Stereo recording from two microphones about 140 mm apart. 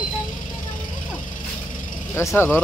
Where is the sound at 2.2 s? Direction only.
20° left (ahead or behind).